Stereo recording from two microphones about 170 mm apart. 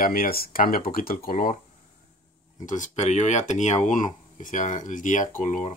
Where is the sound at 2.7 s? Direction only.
45° left (ahead or behind).